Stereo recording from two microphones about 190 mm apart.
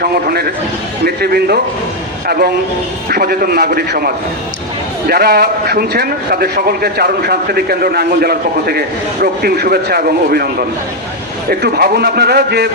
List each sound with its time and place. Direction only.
0.0 s a man's voice: 55° right (ahead or behind)